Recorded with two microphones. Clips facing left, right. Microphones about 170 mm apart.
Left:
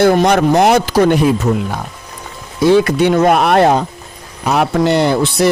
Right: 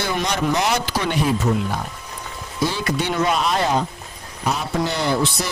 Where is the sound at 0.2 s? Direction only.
55° left (ahead or behind).